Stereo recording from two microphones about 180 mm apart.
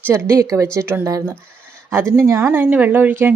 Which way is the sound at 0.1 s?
15° right (ahead or behind).